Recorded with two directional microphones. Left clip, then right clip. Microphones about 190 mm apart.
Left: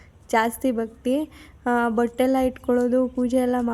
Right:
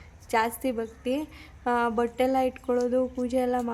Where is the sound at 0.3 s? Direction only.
20° left (ahead or behind).